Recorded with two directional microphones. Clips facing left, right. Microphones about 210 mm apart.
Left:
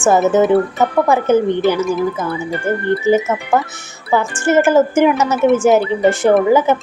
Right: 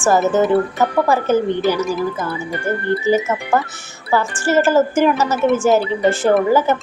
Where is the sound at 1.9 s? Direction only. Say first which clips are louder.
Left 3 dB; centre (ahead or behind).